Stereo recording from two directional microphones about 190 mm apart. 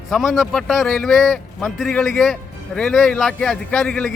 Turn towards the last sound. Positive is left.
turn(degrees=5)  # may be behind; listen again after turning